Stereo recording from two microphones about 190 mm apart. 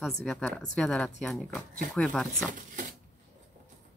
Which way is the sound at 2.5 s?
45° right (ahead or behind).